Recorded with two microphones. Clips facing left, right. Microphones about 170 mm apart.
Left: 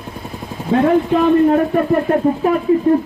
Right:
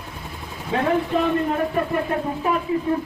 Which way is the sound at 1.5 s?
50° left (ahead or behind).